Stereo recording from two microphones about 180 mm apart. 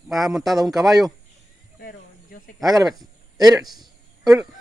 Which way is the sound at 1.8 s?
60° left (ahead or behind).